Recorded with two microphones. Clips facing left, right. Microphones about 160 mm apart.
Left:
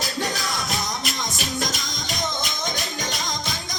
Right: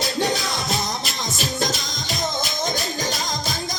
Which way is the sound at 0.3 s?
25° right (ahead or behind).